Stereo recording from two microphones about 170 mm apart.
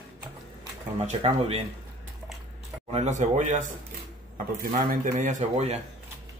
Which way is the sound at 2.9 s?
45° right (ahead or behind).